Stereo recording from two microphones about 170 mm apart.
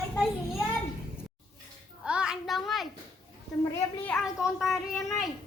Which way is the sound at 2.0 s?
5° right (ahead or behind).